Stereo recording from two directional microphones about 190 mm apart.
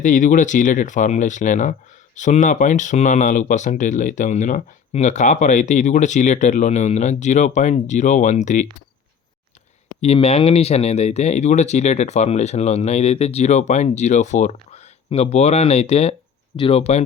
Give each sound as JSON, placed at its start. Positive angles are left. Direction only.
{"t": 0.0, "sound": "speech", "side_deg": 40}
{"t": 10.0, "sound": "speech", "side_deg": 30}